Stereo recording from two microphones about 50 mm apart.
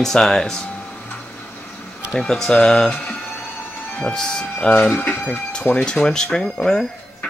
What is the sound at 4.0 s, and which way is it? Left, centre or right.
Speech, centre.